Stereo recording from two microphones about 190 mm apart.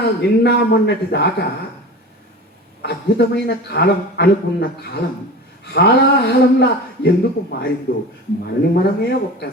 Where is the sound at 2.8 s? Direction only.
60° left (ahead or behind).